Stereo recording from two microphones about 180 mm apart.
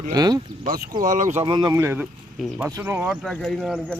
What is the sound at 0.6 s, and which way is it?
Speech, 55° right (ahead or behind).